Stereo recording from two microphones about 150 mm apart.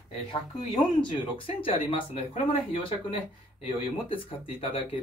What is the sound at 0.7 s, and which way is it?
Speech, 30° left (ahead or behind).